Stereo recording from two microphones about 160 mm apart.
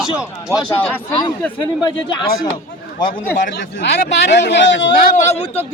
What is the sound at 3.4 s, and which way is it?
Speech, 90° left.